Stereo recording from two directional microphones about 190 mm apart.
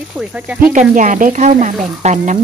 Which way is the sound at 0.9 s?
45° right (ahead or behind).